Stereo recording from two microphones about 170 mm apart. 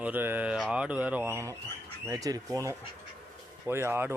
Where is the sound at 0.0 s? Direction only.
10° right (ahead or behind).